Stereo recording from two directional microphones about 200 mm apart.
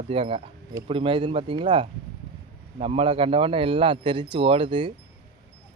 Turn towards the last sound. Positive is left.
turn(degrees=-25)  # may be behind; listen again after turning